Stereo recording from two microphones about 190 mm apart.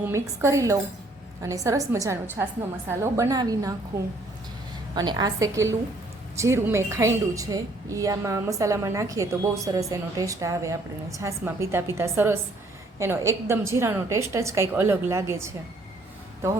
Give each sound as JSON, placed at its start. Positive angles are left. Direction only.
{"t": 0.0, "sound": "a woman's voice", "side_deg": -15}
{"t": 4.9, "sound": "a woman's voice", "side_deg": -20}